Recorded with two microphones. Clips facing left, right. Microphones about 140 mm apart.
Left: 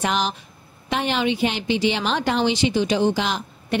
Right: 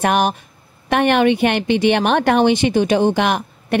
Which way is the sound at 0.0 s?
55° right (ahead or behind).